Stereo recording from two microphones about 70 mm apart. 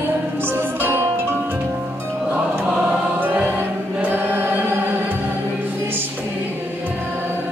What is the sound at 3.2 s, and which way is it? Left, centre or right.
Music, right.